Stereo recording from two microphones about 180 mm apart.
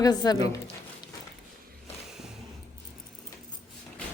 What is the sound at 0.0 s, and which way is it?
Speech, 20° left (ahead or behind).